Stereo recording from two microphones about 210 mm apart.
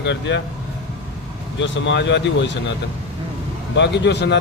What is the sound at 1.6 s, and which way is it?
Speech, 60° left (ahead or behind).